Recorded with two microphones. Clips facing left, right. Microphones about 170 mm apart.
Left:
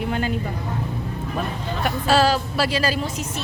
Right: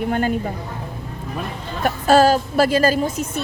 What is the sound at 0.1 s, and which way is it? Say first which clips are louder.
Speech: right 5 dB; 50° right (ahead or behind).